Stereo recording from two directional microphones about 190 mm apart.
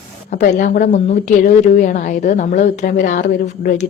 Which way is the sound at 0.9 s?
35° left (ahead or behind).